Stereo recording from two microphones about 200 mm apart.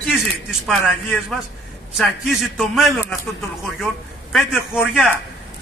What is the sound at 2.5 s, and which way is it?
A man's voice, centre (ahead or behind).